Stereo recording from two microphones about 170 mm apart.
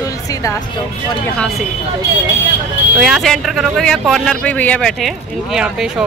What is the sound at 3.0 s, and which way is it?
Speech, centre (ahead or behind).